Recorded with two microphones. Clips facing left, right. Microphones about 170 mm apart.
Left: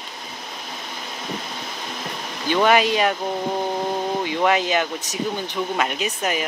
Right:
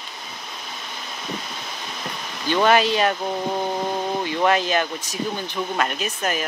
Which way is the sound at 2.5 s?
10° left (ahead or behind).